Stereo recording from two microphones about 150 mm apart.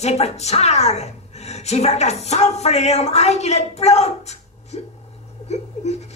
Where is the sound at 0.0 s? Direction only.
45° left (ahead or behind).